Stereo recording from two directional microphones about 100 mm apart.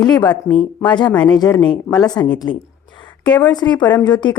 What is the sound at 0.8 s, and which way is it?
Speech, 50° left (ahead or behind).